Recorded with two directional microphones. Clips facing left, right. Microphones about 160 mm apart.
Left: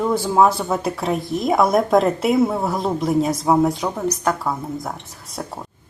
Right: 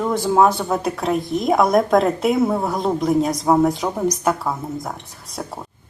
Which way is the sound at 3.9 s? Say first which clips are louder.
Right 2 dB; 10° right (ahead or behind).